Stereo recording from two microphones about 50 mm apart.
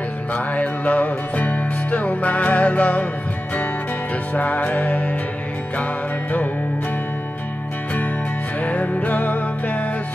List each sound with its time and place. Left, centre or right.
0.3 s music: left
4.3 s music: left
8.5 s music: left